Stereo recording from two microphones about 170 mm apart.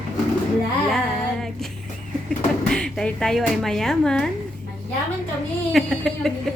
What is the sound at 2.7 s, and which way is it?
A woman's voice, 5° left (ahead or behind).